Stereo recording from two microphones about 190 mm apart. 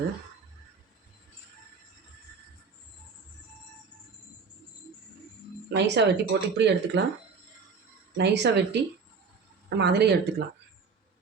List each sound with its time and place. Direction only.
5.7 s speech: 65° right (ahead or behind)
8.1 s speech: 65° right (ahead or behind)